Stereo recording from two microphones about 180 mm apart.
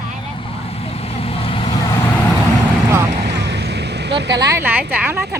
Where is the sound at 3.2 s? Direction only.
70° right (ahead or behind).